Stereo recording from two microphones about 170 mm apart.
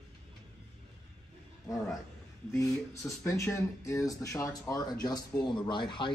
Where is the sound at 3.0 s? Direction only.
15° left (ahead or behind).